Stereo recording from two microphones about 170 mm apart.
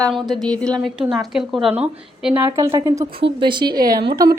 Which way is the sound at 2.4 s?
20° right (ahead or behind).